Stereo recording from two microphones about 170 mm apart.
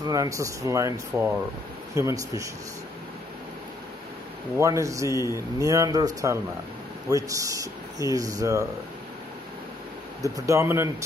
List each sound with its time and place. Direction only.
0.0 s speech: 20° right (ahead or behind)
4.6 s speech: 20° right (ahead or behind)
10.2 s speech: 20° right (ahead or behind)